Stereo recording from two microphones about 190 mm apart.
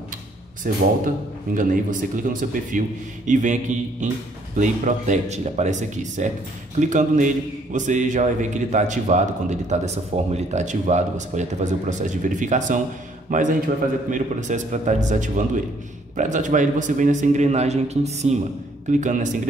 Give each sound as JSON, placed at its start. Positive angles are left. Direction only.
{"t": 0.7, "sound": "a man's voice", "side_deg": -45}
{"t": 4.6, "sound": "a man's voice", "side_deg": -40}